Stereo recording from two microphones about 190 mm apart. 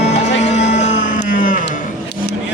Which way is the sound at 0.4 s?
35° left (ahead or behind).